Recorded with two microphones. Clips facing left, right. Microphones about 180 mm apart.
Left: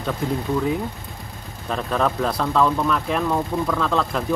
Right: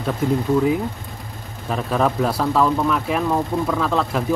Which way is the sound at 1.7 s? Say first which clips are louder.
Right 2 dB; 5° right (ahead or behind).